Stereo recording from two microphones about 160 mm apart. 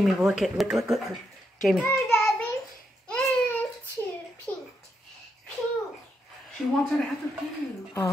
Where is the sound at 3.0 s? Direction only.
10° left (ahead or behind).